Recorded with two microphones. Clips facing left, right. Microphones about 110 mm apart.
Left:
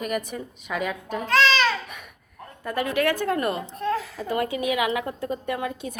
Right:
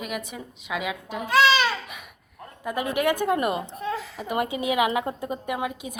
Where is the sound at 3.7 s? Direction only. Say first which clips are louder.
Left 4 dB; centre (ahead or behind).